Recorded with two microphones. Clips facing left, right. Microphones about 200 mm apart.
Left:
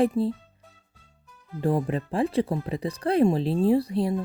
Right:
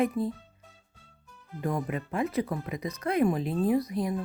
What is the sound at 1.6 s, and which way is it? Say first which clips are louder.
Speech: left 6 dB; 30° left (ahead or behind).